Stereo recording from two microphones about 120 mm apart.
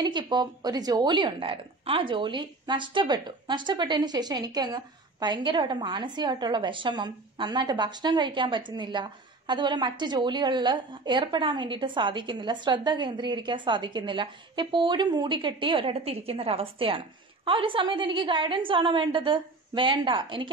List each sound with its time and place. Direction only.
0.0 s a woman's voice: 40° right (ahead or behind)